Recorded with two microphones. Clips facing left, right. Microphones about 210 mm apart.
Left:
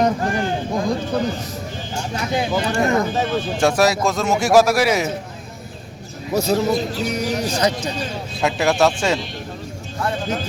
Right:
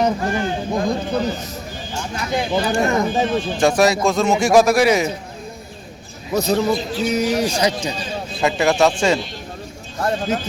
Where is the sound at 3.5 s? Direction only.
5° left (ahead or behind).